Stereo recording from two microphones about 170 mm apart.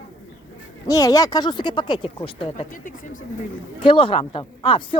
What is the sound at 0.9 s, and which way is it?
Speech, 20° left (ahead or behind).